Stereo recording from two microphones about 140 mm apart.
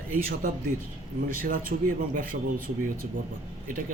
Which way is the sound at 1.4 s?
85° right.